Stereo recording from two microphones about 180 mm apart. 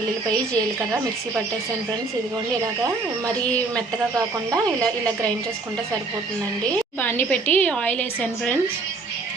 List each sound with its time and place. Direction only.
4.5 s speech: 20° right (ahead or behind)
7.0 s a woman's voice: 10° left (ahead or behind)